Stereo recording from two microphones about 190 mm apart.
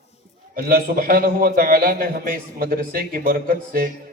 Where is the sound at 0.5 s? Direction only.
50° right (ahead or behind).